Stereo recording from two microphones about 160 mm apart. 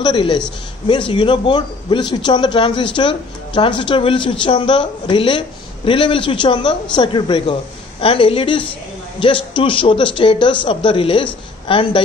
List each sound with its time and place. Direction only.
0.0 s a woman's voice: 30° left (ahead or behind)